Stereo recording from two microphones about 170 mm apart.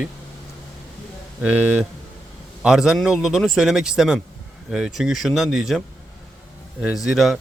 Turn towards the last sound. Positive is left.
turn(degrees=0)  # may be behind; listen again after turning